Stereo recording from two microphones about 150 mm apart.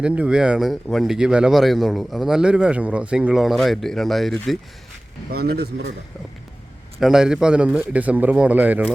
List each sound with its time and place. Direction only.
0.0 s a man's voice: 10° right (ahead or behind)
5.3 s a man's voice: 90° right
7.0 s a man's voice: 5° right (ahead or behind)